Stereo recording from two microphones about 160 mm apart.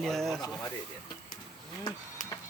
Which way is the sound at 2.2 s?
50° left (ahead or behind).